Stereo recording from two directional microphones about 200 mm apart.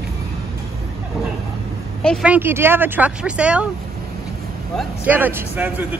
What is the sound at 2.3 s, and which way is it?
Speech, 10° right (ahead or behind).